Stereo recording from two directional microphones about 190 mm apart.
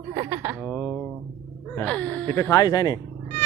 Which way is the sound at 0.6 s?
5° left (ahead or behind).